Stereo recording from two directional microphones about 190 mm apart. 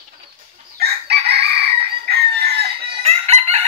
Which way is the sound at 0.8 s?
55° right (ahead or behind).